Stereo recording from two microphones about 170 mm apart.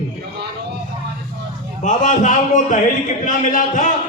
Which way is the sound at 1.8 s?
45° left (ahead or behind).